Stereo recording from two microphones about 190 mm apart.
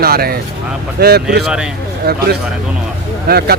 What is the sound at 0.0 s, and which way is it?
A man's voice, 55° right (ahead or behind).